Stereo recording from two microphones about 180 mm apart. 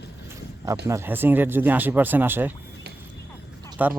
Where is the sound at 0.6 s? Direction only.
15° right (ahead or behind).